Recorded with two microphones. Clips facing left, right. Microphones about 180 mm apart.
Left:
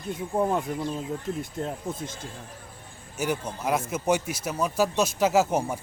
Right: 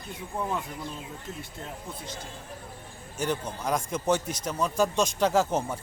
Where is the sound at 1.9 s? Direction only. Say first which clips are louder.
Left 4 dB; 50° left (ahead or behind).